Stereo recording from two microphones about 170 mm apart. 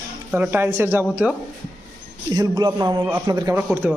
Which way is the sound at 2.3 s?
25° right (ahead or behind).